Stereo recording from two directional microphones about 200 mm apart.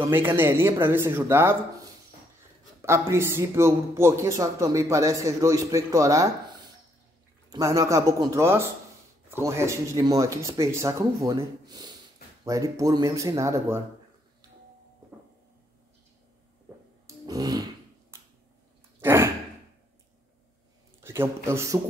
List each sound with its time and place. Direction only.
0.0 s a man's voice: 10° right (ahead or behind)
7.4 s a man's voice: 15° right (ahead or behind)
17.3 s a sound: 20° right (ahead or behind)
18.9 s sigh: 10° right (ahead or behind)
21.0 s a man's voice: 10° right (ahead or behind)